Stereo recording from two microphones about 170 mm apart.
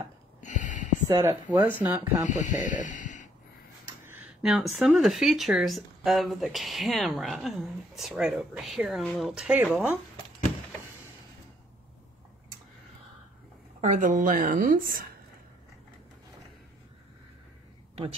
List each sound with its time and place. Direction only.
0.4 s a sound: 45° left (ahead or behind)
1.0 s speech: 15° right (ahead or behind)
2.3 s speech: 50° left (ahead or behind)
4.0 s speech: 10° right (ahead or behind)
13.7 s a woman's voice: 45° right (ahead or behind)